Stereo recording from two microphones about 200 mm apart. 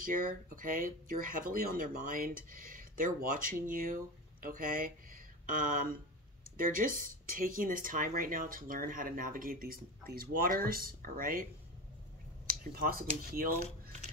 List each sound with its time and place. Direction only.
0.0 s speech: 45° right (ahead or behind)
12.4 s speech: 45° right (ahead or behind)